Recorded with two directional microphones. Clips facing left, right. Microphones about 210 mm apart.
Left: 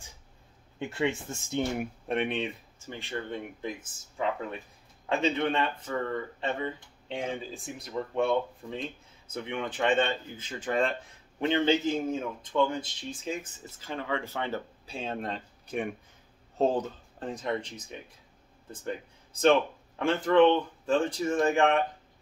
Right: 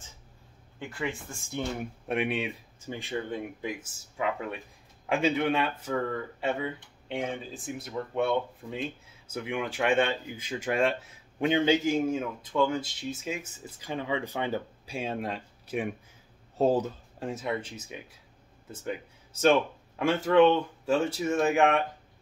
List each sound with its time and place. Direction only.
0.7 s speech: 25° left (ahead or behind)
2.0 s speech: 5° right (ahead or behind)
20.0 s speech: 10° right (ahead or behind)